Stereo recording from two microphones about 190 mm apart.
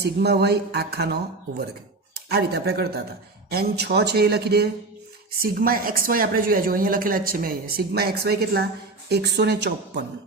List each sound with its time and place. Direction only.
0.0 s a woman's voice: 60° right (ahead or behind)